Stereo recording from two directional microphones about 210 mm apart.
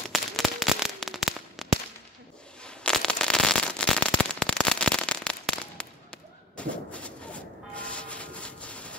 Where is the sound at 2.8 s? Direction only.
5° left (ahead or behind).